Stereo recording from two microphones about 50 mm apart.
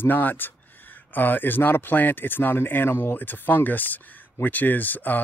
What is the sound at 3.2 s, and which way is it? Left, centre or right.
Speech, left.